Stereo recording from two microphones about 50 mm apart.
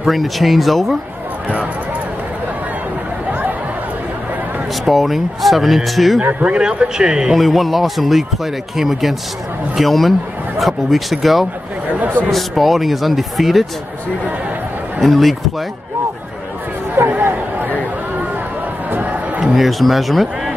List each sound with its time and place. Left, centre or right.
0.0 s speech: centre
4.8 s speech: centre
6.4 s speech: centre
7.3 s speech: centre
15.0 s speech: centre
17.1 s chatter: right
18.9 s crowd: right
19.4 s speech: centre